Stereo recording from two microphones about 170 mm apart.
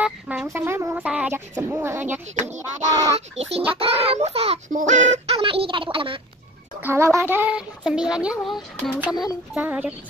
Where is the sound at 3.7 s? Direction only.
35° right (ahead or behind).